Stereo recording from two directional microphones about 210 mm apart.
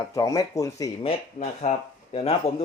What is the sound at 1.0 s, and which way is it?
Speech, 30° left (ahead or behind).